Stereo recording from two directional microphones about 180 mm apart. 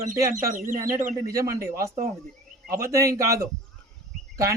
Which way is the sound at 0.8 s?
15° right (ahead or behind).